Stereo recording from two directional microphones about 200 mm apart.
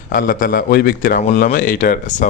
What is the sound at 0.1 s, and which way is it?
A man's voice, 45° left (ahead or behind).